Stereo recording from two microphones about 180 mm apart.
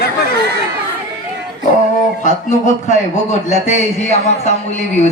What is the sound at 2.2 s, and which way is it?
A man's voice, 40° left (ahead or behind).